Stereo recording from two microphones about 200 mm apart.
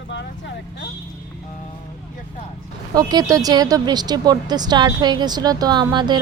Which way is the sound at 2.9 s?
20° right (ahead or behind).